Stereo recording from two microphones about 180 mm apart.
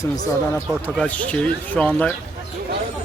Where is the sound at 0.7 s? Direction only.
5° left (ahead or behind).